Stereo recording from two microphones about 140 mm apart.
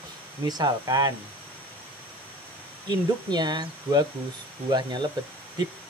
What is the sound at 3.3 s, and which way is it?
Speech, 30° right (ahead or behind).